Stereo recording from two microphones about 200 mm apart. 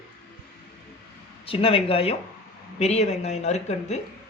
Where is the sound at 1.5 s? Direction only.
30° left (ahead or behind).